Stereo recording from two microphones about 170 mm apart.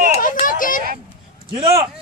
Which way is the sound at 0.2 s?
55° left (ahead or behind).